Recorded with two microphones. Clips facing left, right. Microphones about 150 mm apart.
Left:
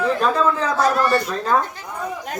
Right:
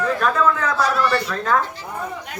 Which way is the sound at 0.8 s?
45° left (ahead or behind).